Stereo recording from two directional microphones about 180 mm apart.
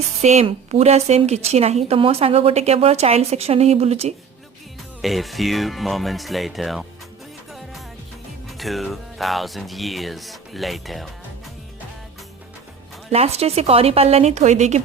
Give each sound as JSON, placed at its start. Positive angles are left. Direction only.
{"t": 0.2, "sound": "a woman's voice", "side_deg": -40}
{"t": 5.0, "sound": "speech", "side_deg": 0}
{"t": 8.4, "sound": "speech", "side_deg": 0}
{"t": 13.1, "sound": "a woman's voice", "side_deg": -35}